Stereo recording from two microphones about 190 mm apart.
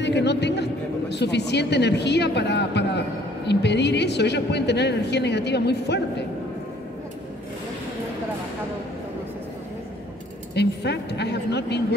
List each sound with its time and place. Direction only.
0.0 s speech: 65° left (ahead or behind)
10.5 s speech: 60° left (ahead or behind)